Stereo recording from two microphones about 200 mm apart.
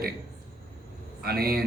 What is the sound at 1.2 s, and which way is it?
Speech, 50° right (ahead or behind).